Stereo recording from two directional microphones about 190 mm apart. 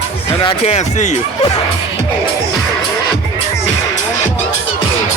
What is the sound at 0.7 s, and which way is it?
Speech, 35° left (ahead or behind).